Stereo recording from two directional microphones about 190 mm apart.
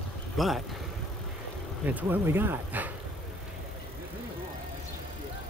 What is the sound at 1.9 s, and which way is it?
Speech, 10° right (ahead or behind).